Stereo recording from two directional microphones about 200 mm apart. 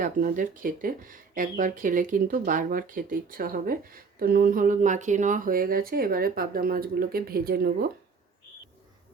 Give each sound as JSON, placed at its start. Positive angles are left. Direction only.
{"t": 0.0, "sound": "speech", "side_deg": -40}